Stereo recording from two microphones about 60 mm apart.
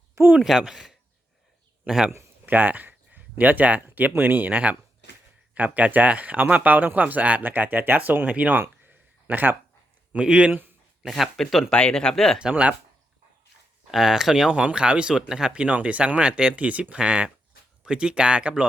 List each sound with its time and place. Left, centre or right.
0.3 s speech: centre
2.5 s speech: right
8.8 s a sound: right
10.1 s a man's voice: centre
11.1 s speech: centre
11.7 s speech: centre
12.4 s speech: centre
13.9 s speech: centre